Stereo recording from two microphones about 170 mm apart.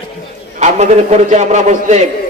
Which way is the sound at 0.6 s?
40° right (ahead or behind).